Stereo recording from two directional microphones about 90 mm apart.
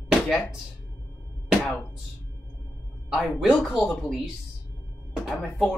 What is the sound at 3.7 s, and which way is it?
Speech, 15° left (ahead or behind).